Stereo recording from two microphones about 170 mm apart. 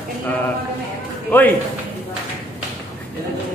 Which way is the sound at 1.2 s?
10° left (ahead or behind).